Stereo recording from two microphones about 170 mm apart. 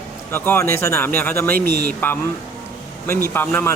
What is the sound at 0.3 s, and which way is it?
Speech, 15° left (ahead or behind).